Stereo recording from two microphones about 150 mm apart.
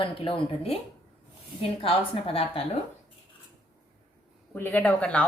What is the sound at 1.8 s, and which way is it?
Speech, 40° left (ahead or behind).